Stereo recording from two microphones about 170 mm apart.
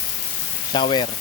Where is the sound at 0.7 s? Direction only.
30° left (ahead or behind).